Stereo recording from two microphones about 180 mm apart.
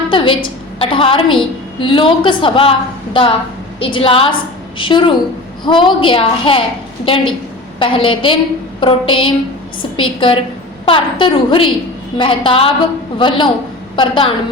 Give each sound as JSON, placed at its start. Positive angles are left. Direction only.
{"t": 0.1, "sound": "a woman's voice", "side_deg": 30}